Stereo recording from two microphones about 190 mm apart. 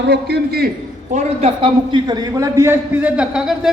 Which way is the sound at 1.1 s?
30° right (ahead or behind).